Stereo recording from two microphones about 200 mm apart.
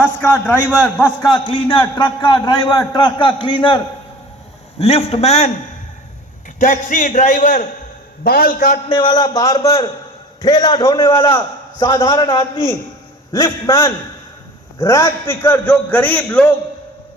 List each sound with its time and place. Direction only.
0.0 s a man's voice: 10° left (ahead or behind)
1.0 s a man's voice: 20° left (ahead or behind)
4.8 s a man's voice: 30° left (ahead or behind)
6.6 s a man's voice: 40° left (ahead or behind)
8.9 s a man's voice: 20° left (ahead or behind)